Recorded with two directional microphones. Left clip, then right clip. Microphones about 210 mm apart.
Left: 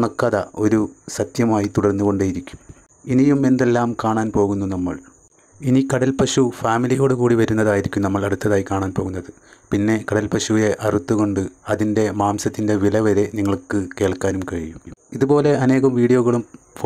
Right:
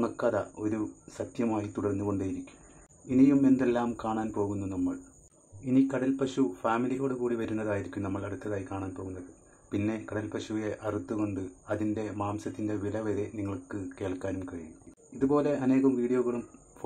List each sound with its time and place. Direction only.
0.0 s speech: 35° left (ahead or behind)